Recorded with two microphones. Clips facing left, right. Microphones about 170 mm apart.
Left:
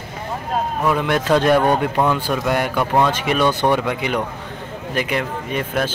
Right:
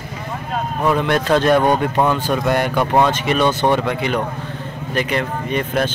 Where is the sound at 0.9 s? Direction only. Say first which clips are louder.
Right 2 dB; 10° left (ahead or behind).